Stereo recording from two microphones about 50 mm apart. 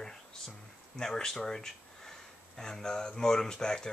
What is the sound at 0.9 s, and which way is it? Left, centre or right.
Speech, centre.